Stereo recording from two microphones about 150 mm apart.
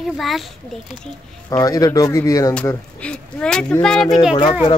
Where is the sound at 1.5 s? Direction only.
25° left (ahead or behind).